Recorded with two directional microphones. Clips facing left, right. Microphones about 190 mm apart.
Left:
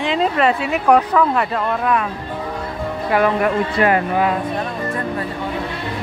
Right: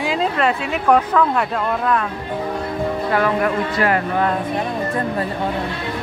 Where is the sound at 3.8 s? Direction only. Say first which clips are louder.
Left 2 dB; 20° left (ahead or behind).